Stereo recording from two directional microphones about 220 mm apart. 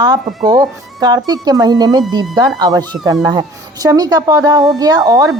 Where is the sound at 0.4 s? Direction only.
15° right (ahead or behind).